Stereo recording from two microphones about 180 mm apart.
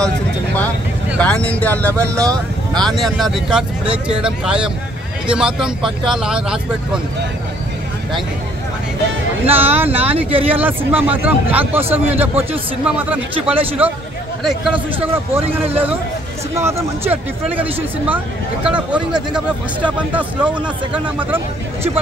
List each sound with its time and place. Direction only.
1.2 s speech: 5° left (ahead or behind)
9.5 s speech: 35° right (ahead or behind)
10.0 s speech: 10° right (ahead or behind)